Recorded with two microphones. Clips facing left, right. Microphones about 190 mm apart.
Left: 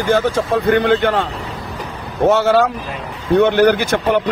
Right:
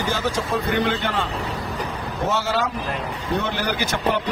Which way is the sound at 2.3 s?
60° left (ahead or behind).